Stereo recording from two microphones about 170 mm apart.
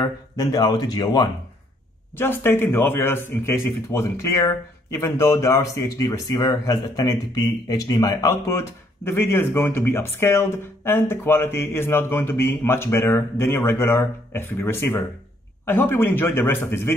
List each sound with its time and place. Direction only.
0.0 s speech: 20° left (ahead or behind)